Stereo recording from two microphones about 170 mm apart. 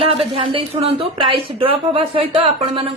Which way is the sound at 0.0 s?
35° right (ahead or behind).